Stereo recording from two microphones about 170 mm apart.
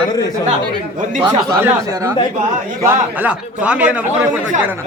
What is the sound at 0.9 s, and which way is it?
Speech, 45° right (ahead or behind).